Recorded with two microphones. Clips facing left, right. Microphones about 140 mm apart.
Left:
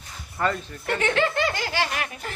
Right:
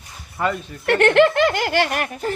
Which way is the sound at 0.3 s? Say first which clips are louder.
Right 2 dB; 15° right (ahead or behind).